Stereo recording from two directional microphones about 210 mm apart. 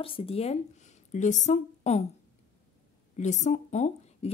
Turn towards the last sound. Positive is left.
turn(degrees=35)  # may be behind; listen again after turning